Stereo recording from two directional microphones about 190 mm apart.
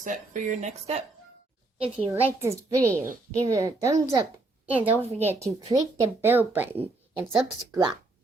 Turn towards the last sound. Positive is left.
turn(degrees=-5)  # may be behind; listen again after turning